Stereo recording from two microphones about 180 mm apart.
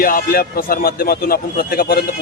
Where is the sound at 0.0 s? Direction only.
50° left (ahead or behind).